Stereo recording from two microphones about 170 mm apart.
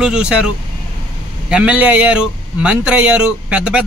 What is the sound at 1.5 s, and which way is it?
Speech, 5° right (ahead or behind).